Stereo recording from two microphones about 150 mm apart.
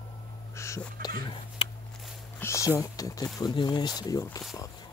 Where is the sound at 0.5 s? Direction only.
20° left (ahead or behind).